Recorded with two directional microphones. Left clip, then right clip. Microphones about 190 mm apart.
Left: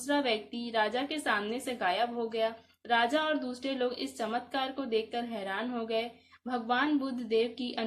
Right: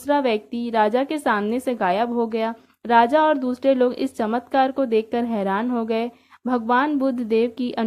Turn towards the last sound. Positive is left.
turn(degrees=-50)  # may be behind; listen again after turning